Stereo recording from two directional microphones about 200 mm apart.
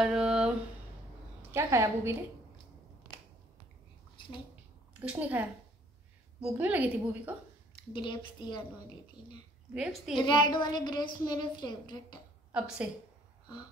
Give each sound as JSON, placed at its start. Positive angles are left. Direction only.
{"t": 0.0, "sound": "a sound", "side_deg": -5}
{"t": 1.5, "sound": "a woman's voice", "side_deg": -15}
{"t": 5.0, "sound": "a woman's voice", "side_deg": -5}
{"t": 6.6, "sound": "a woman's voice", "side_deg": -5}
{"t": 7.9, "sound": "a woman's voice", "side_deg": 25}
{"t": 9.8, "sound": "a woman's voice", "side_deg": -5}
{"t": 10.2, "sound": "a woman's voice", "side_deg": 25}
{"t": 12.5, "sound": "a woman's voice", "side_deg": -5}